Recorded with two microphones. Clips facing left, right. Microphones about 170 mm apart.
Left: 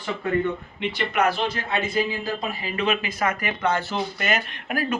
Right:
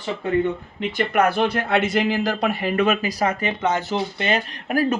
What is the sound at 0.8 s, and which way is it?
Speech, 50° right (ahead or behind).